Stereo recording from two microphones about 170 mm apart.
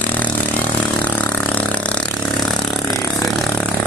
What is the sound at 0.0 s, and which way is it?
Vehicle, 10° left (ahead or behind).